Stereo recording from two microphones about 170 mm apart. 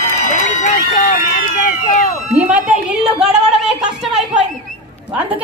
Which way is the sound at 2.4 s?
10° right (ahead or behind).